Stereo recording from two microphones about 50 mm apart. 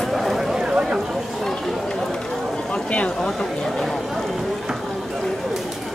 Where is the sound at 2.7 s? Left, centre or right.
Centre.